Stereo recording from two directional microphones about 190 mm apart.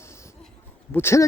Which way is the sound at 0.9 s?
15° left (ahead or behind).